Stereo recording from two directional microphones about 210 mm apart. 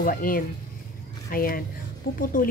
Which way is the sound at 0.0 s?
40° left (ahead or behind).